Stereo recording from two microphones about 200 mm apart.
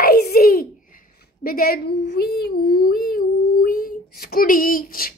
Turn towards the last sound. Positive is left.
turn(degrees=45)  # may be behind; listen again after turning